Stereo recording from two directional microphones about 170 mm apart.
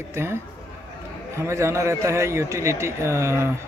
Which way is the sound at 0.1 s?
15° right (ahead or behind).